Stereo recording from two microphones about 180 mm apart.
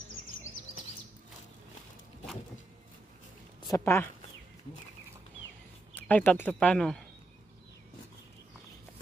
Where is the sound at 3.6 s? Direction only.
15° left (ahead or behind).